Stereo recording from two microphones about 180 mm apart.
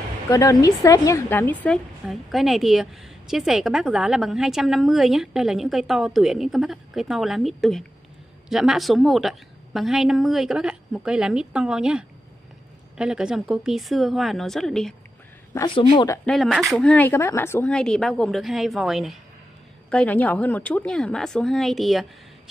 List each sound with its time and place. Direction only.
0.3 s a woman's voice: 20° left (ahead or behind); by 15.0 s 5° left (ahead or behind)
15.6 s speech: 25° left (ahead or behind)
16.3 s a woman's voice: centre (ahead or behind)